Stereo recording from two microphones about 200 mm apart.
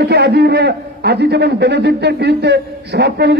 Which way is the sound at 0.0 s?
55° right (ahead or behind).